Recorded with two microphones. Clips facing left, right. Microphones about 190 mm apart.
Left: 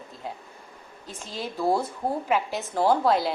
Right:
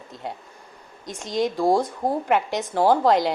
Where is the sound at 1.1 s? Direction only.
80° right.